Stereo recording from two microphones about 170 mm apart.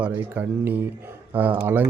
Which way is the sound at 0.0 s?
10° right (ahead or behind).